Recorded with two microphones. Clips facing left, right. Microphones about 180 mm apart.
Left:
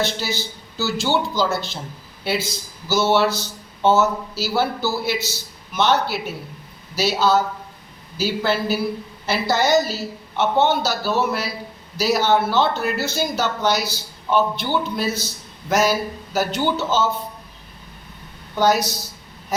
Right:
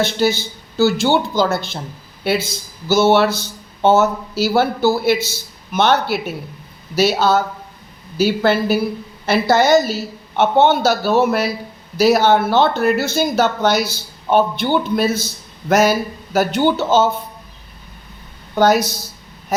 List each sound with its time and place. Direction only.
0.0 s a woman's voice: 55° right (ahead or behind)
2.9 s a woman's voice: 55° right (ahead or behind)
18.5 s a woman's voice: 55° right (ahead or behind)